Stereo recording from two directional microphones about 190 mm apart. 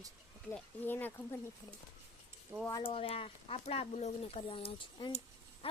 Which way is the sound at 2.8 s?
30° left (ahead or behind).